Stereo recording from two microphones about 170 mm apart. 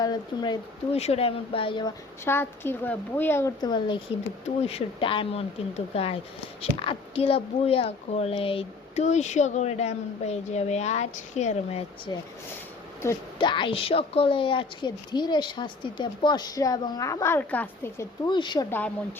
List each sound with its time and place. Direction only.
0.0 s a woman's voice: 25° left (ahead or behind)
0.9 s a woman's voice: 35° left (ahead or behind)
2.2 s a woman's voice: 15° left (ahead or behind)
3.6 s a woman's voice: 25° left (ahead or behind)
13.4 s a woman's voice: 30° left (ahead or behind); by 18.0 s 10° left (ahead or behind)
18.3 s a woman's voice: 25° left (ahead or behind)